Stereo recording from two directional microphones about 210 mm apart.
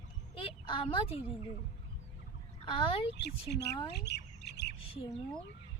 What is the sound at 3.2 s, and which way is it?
Speech, 50° left (ahead or behind).